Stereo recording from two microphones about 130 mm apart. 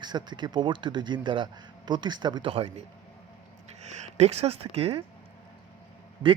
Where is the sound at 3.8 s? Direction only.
60° right (ahead or behind).